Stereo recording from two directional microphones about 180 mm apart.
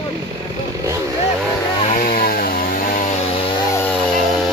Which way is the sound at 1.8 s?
45° left (ahead or behind).